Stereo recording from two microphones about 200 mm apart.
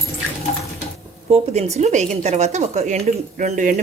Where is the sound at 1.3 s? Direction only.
35° right (ahead or behind).